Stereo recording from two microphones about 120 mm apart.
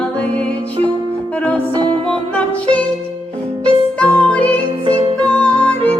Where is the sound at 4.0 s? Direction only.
10° left (ahead or behind).